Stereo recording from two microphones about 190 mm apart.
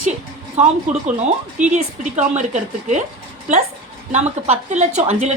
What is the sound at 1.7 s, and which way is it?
A woman's voice, 40° right (ahead or behind).